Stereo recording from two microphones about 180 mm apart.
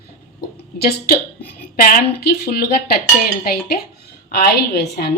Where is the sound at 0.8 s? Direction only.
60° left (ahead or behind).